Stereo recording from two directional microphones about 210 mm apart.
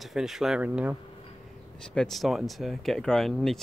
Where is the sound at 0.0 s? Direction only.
Centre (ahead or behind).